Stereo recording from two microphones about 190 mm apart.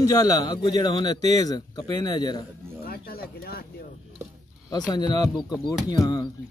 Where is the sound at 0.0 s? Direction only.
20° left (ahead or behind).